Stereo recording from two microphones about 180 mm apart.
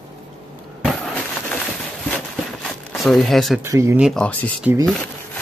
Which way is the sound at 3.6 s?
15° right (ahead or behind).